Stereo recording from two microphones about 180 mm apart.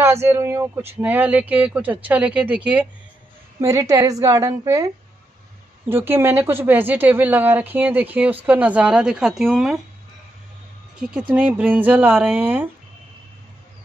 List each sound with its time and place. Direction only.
0.0 s a woman's voice: 15° right (ahead or behind)
11.0 s speech: 5° right (ahead or behind)